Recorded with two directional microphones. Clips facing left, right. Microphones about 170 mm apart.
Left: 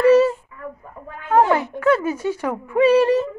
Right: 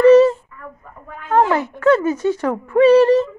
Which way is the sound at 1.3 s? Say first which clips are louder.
Even; 10° left (ahead or behind).